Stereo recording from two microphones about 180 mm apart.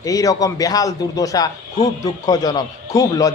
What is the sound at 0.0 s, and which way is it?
A man's voice, 20° left (ahead or behind).